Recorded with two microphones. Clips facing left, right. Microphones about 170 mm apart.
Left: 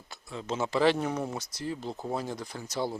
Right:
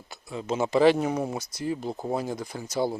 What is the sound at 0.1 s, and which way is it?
Speech, 10° right (ahead or behind).